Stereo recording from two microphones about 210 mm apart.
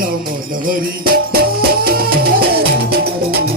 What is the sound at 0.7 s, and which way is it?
Music, 45° right (ahead or behind).